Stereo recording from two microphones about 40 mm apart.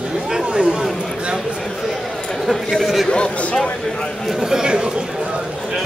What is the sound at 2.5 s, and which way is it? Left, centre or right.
Speech, centre.